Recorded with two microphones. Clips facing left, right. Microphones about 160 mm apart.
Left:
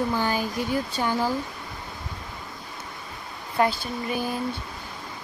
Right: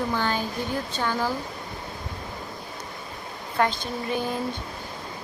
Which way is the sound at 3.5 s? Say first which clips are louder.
Left 1 dB; 5° left (ahead or behind).